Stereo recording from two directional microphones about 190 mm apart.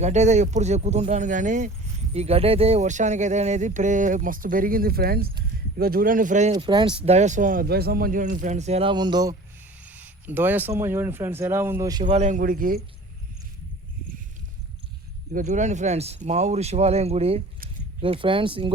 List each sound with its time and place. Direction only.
0.0 s speech: 35° right (ahead or behind)
6.5 s speech: 25° right (ahead or behind)
9.8 s speech: 10° right (ahead or behind)
12.0 s speech: 40° right (ahead or behind)
15.3 s speech: 45° right (ahead or behind); by 18.7 s 25° right (ahead or behind)